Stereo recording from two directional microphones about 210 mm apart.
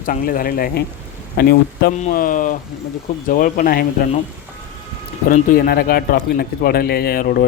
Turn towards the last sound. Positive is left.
turn(degrees=45)  # may be behind; listen again after turning